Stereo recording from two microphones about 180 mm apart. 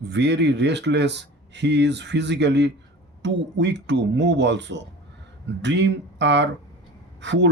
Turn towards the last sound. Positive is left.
turn(degrees=-80)